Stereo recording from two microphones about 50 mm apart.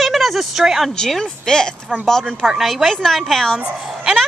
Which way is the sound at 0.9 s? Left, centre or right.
Centre.